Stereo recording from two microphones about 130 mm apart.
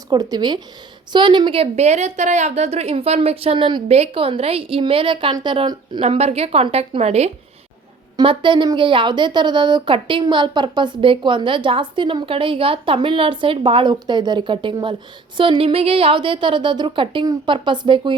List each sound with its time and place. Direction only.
0.1 s a woman's voice: 30° right (ahead or behind)
3.8 s a woman's voice: 50° right (ahead or behind); by 6.0 s 35° right (ahead or behind)
6.0 s a woman's voice: 55° right (ahead or behind)
8.1 s a woman's voice: 40° right (ahead or behind)